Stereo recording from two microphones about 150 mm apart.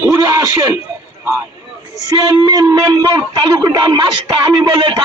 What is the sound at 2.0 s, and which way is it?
A man's voice, 20° right (ahead or behind).